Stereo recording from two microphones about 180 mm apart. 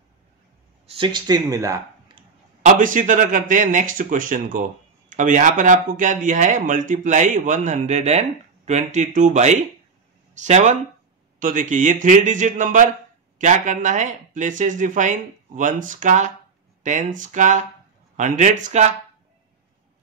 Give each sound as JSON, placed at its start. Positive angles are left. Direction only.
{"t": 0.8, "sound": "speech", "side_deg": -30}
{"t": 2.6, "sound": "speech", "side_deg": -45}